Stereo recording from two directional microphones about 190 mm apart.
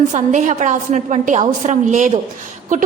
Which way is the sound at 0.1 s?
40° right (ahead or behind).